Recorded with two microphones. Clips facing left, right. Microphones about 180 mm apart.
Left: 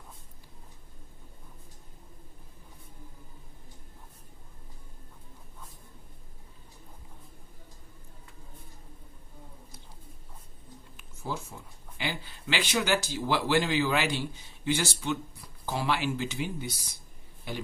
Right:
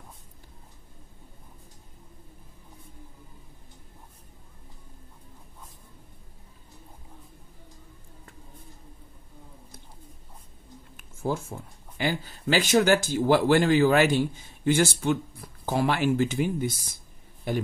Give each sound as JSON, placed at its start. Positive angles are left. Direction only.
{"t": 11.0, "sound": "speech", "side_deg": -50}